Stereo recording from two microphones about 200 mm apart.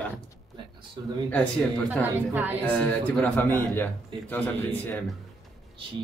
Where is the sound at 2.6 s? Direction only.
10° left (ahead or behind).